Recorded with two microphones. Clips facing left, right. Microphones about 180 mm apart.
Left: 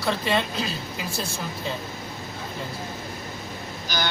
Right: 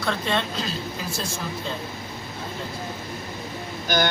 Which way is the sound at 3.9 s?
50° right (ahead or behind).